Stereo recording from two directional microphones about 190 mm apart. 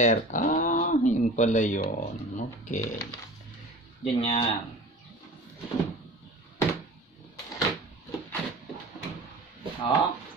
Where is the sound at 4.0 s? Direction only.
30° left (ahead or behind).